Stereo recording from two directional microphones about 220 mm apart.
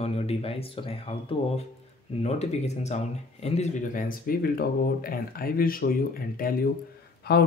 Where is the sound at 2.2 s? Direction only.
30° left (ahead or behind).